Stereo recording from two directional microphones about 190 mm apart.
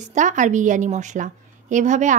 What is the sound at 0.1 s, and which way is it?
A woman's voice, 40° right (ahead or behind).